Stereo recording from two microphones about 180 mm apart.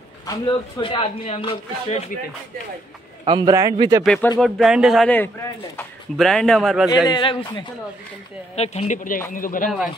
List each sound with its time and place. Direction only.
0.3 s speech: 25° left (ahead or behind)
3.3 s a man's voice: 25° right (ahead or behind)
4.0 s a man's voice: 5° left (ahead or behind)
7.1 s a man's voice: 25° left (ahead or behind)
8.5 s speech: 35° left (ahead or behind)